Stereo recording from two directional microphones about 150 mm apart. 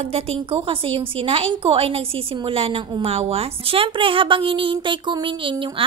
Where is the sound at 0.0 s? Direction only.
40° right (ahead or behind).